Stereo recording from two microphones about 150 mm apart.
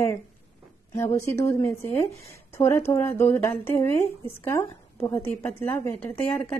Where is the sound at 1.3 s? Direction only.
20° left (ahead or behind).